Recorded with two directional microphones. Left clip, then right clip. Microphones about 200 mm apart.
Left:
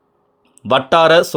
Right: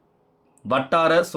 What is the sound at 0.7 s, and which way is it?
Speech, 45° left (ahead or behind).